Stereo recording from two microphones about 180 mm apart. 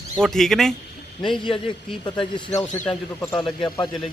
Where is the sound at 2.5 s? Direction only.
10° left (ahead or behind).